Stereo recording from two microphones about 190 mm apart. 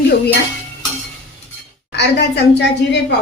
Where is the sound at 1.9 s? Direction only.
65° left (ahead or behind).